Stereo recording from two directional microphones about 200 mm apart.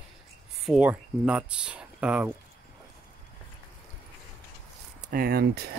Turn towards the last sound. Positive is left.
turn(degrees=-50)  # may be behind; listen again after turning